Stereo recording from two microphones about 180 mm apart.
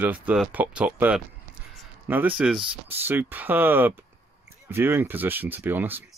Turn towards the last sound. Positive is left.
turn(degrees=-10)  # may be behind; listen again after turning